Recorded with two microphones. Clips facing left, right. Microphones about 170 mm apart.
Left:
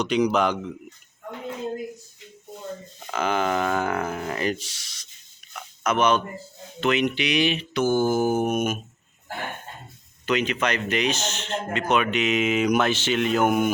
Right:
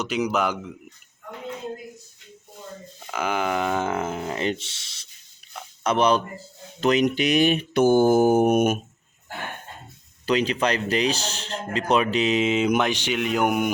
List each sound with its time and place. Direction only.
0.0 s speech: 5° right (ahead or behind)
3.1 s speech: 10° right (ahead or behind); by 5.0 s 25° right (ahead or behind)
5.5 s a sound: 30° right (ahead or behind)
6.7 s speech: 40° right (ahead or behind); by 8.8 s 55° right (ahead or behind)
10.2 s speech: 35° right (ahead or behind); by 13.7 s 15° right (ahead or behind)